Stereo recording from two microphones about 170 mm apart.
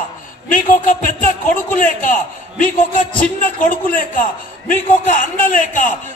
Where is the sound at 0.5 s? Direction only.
50° left (ahead or behind).